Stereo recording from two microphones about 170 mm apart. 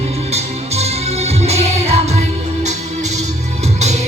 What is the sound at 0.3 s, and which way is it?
Music, 40° right (ahead or behind).